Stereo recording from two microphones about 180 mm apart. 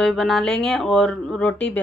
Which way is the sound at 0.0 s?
Centre (ahead or behind).